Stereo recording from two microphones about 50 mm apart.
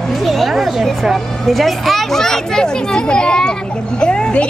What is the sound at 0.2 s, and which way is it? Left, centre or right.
A child's voice, centre.